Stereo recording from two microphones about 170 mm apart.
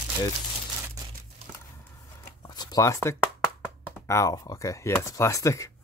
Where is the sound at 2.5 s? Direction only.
25° left (ahead or behind).